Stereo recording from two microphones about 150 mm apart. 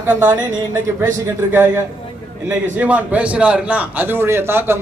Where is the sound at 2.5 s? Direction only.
10° right (ahead or behind).